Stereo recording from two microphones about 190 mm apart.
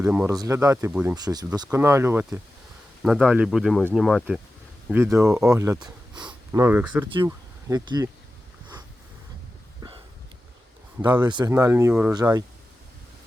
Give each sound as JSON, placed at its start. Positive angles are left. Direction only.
{"t": 0.0, "sound": "speech", "side_deg": -5}
{"t": 0.3, "sound": "speech", "side_deg": -15}
{"t": 9.8, "sound": "a sound", "side_deg": -20}
{"t": 11.0, "sound": "speech", "side_deg": -25}